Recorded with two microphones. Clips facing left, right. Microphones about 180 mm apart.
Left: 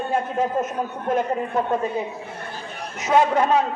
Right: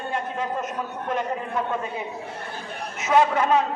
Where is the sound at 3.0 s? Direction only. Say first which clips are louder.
Left 2 dB; 35° left (ahead or behind).